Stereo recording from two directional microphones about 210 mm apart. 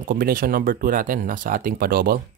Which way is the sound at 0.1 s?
40° right (ahead or behind).